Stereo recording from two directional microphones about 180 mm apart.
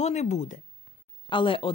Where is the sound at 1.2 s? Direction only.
30° left (ahead or behind).